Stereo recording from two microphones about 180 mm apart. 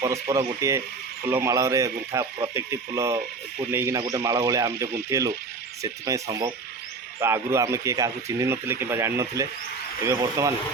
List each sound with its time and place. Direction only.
0.0 s speech: 15° right (ahead or behind)